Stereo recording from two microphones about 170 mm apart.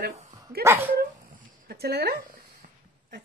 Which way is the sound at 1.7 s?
70° right (ahead or behind).